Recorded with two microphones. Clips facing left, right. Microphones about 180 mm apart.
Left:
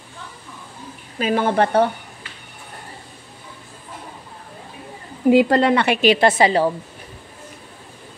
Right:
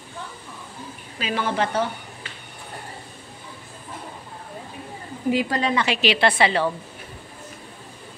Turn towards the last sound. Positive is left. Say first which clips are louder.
# left 4 dB
turn(degrees=40)  # may be behind; listen again after turning